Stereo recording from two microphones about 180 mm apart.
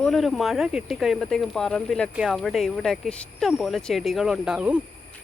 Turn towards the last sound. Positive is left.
turn(degrees=-5)  # may be behind; listen again after turning